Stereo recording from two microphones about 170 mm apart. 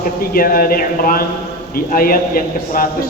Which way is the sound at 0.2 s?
60° left (ahead or behind).